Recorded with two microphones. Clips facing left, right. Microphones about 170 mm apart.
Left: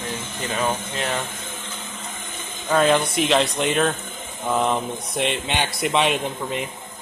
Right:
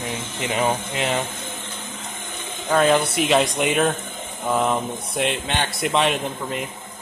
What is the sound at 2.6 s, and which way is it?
A man's voice, centre (ahead or behind).